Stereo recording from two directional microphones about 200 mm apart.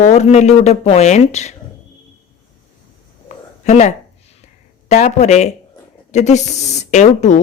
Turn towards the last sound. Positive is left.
turn(degrees=35)  # may be behind; listen again after turning